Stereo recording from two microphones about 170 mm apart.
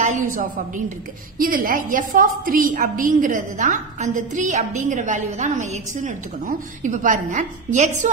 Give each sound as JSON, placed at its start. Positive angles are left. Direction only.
{"t": 0.0, "sound": "a woman's voice", "side_deg": -50}